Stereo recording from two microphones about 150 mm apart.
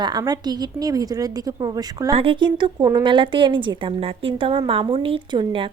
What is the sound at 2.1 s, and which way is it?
A woman's voice, 35° right (ahead or behind).